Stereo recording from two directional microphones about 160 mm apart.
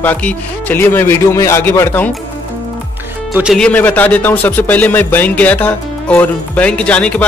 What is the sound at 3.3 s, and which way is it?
Speech, 5° right (ahead or behind).